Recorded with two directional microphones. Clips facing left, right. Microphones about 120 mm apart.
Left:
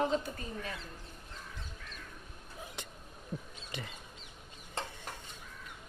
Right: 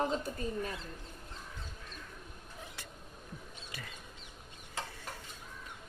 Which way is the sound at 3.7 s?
25° left (ahead or behind).